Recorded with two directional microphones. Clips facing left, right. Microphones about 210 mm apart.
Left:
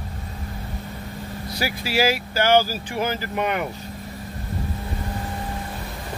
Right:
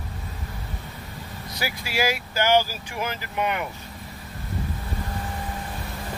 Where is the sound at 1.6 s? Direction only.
30° left (ahead or behind).